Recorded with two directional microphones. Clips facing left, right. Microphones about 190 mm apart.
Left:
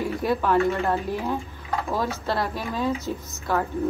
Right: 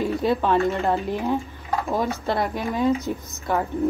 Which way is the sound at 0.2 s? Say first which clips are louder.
Even; 25° right (ahead or behind).